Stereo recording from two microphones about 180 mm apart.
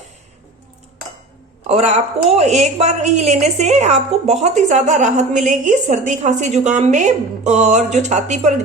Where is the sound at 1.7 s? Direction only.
40° right (ahead or behind).